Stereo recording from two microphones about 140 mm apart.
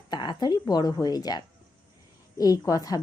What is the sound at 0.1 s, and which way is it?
A woman's voice, 30° left (ahead or behind).